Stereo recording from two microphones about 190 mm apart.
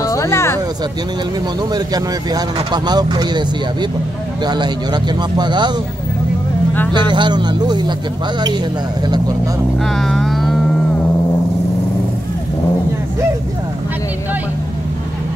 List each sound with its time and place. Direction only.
0.0 s a sound: 15° left (ahead or behind)
1.7 s speech: 20° right (ahead or behind)
4.5 s speech: 20° right (ahead or behind)
6.9 s speech: 25° right (ahead or behind)
9.9 s music: centre (ahead or behind)